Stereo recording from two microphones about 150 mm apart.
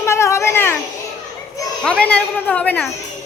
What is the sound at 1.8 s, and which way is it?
A child's voice, 5° left (ahead or behind).